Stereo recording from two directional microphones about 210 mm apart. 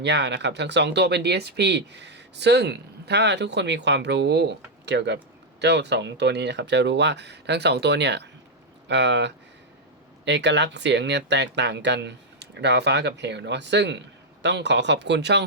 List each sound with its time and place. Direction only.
0.0 s speech: 55° right (ahead or behind)